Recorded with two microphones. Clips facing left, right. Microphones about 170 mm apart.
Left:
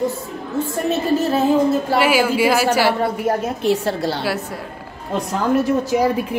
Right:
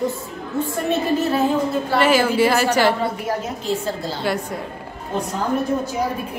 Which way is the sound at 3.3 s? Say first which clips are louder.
Left 5 dB; 70° left (ahead or behind).